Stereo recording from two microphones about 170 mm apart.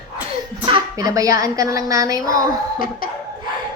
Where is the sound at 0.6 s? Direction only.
25° right (ahead or behind).